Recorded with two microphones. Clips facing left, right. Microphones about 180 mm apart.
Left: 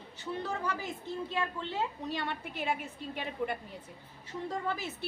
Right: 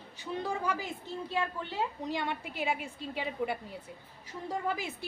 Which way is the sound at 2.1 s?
15° right (ahead or behind).